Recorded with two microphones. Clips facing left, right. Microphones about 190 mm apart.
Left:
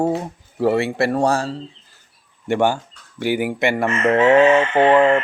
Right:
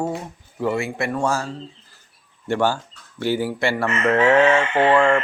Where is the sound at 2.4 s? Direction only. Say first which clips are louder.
Left 3 dB; 15° left (ahead or behind).